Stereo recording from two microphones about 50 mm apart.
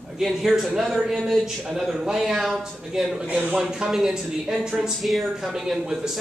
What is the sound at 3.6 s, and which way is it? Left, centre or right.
Speech, centre.